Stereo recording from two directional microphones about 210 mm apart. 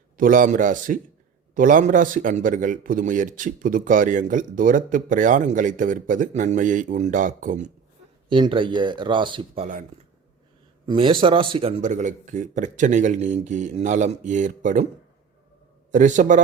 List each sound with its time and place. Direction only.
0.2 s speech: 40° right (ahead or behind)
8.3 s speech: 25° right (ahead or behind)
10.8 s speech: 20° right (ahead or behind)
11.8 s speech: 35° right (ahead or behind)
15.9 s speech: 35° right (ahead or behind)